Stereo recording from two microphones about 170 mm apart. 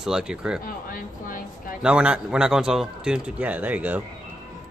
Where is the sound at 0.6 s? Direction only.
55° left (ahead or behind).